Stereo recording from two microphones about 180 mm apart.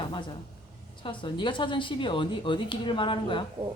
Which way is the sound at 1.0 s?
25° left (ahead or behind).